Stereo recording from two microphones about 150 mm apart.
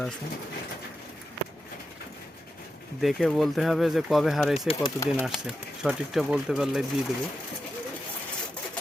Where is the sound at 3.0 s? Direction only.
Centre (ahead or behind).